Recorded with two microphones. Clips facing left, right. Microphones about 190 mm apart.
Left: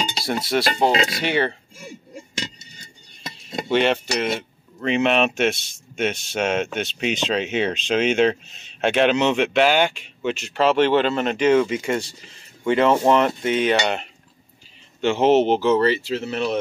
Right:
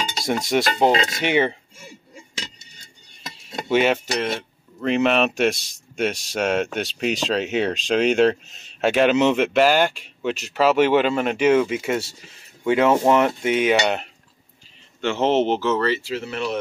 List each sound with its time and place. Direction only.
0.5 s cutlery: 15° right (ahead or behind)
3.7 s speech: 5° right (ahead or behind)
12.6 s cutlery: 10° right (ahead or behind)
15.0 s speech: 15° left (ahead or behind)